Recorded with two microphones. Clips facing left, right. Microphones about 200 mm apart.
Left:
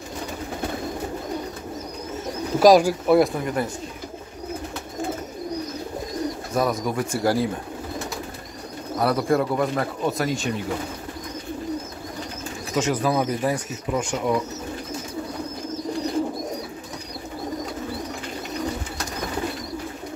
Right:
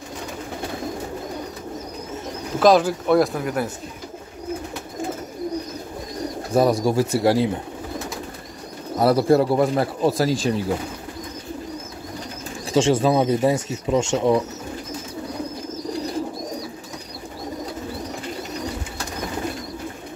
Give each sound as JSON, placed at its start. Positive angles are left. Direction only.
{"t": 2.6, "sound": "speech", "side_deg": 10}
{"t": 6.5, "sound": "speech", "side_deg": -30}
{"t": 8.9, "sound": "speech", "side_deg": -30}
{"t": 12.7, "sound": "speech", "side_deg": -30}